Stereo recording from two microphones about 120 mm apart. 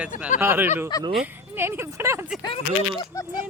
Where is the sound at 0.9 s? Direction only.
30° left (ahead or behind).